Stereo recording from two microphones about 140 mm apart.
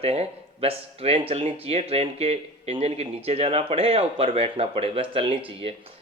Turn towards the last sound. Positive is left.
turn(degrees=-40)  # may be behind; listen again after turning